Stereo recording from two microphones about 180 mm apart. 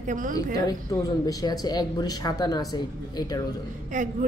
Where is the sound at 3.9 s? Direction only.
45° right (ahead or behind).